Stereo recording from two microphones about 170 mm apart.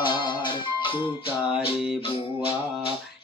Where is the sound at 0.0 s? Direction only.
25° left (ahead or behind).